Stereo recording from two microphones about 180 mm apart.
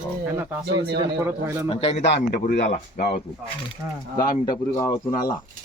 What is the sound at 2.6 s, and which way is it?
Speech, 40° left (ahead or behind).